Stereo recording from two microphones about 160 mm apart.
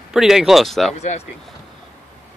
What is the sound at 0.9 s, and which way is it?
Speech, 45° left (ahead or behind).